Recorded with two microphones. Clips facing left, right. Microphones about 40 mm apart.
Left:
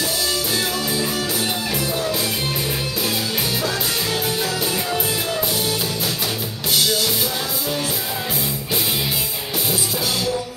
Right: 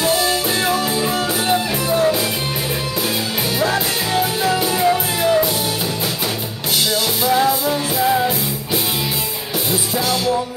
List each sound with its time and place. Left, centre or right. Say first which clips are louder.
0.0 s music: right 6 dB; right
4.4 s music: right 5 dB; right